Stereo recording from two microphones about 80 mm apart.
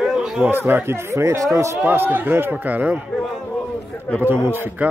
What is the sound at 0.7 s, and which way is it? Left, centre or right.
Speech, right.